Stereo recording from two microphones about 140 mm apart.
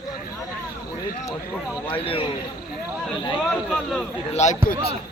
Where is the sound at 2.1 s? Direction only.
40° left (ahead or behind).